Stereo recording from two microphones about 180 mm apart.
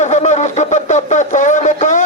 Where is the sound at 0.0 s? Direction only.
40° left (ahead or behind).